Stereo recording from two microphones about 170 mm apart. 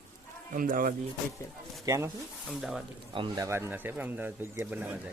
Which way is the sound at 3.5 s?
15° right (ahead or behind).